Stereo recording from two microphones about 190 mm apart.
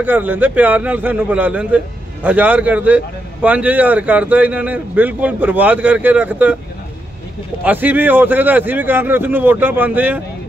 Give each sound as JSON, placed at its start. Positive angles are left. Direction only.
{"t": 0.0, "sound": "a man's voice", "side_deg": -10}
{"t": 7.6, "sound": "a man's voice", "side_deg": -10}